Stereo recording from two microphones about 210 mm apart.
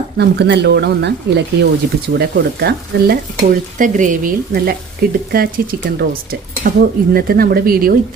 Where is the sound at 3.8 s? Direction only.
40° right (ahead or behind).